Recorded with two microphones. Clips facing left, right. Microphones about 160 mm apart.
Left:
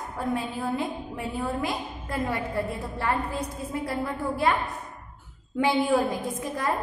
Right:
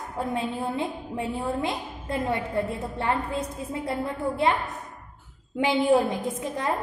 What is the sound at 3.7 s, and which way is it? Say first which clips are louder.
Speech: even; 25° right (ahead or behind).